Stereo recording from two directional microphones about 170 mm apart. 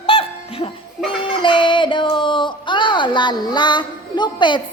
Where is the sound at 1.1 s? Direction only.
30° left (ahead or behind).